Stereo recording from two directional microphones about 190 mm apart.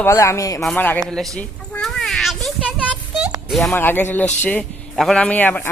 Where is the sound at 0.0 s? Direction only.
15° left (ahead or behind).